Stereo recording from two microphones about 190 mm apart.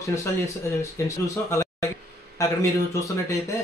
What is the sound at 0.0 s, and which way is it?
A man's voice, 15° left (ahead or behind).